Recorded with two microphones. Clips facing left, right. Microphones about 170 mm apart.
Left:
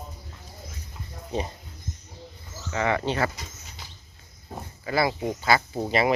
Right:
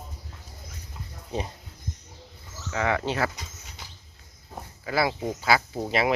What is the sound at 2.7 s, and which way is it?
Speech, centre (ahead or behind).